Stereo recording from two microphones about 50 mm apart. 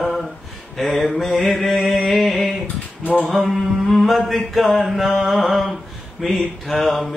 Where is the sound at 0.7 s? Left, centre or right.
Centre.